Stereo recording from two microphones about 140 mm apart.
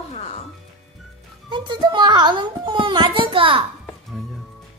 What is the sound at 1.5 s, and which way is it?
A child's voice, 35° right (ahead or behind).